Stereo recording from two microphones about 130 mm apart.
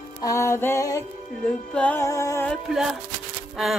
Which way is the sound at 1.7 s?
10° left (ahead or behind).